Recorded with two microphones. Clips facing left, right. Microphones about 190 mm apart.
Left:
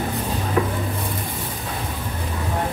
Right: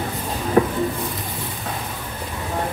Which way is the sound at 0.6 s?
35° right (ahead or behind).